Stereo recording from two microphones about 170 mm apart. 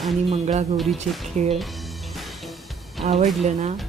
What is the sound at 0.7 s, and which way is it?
Speech, centre (ahead or behind).